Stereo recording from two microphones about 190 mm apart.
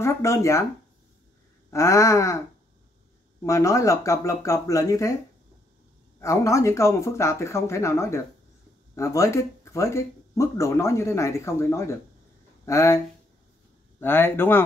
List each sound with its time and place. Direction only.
0.0 s speech: 15° left (ahead or behind)
1.7 s speech: 15° left (ahead or behind)
3.4 s speech: 15° left (ahead or behind)
6.1 s speech: 15° left (ahead or behind)